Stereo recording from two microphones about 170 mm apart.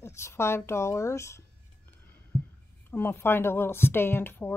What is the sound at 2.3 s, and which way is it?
Heart sounds, 5° left (ahead or behind).